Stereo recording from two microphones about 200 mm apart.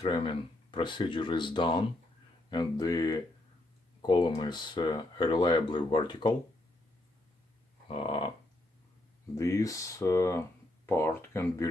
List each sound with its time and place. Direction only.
0.0 s speech: 25° left (ahead or behind)
7.9 s speech: 25° left (ahead or behind)
9.3 s speech: 15° left (ahead or behind)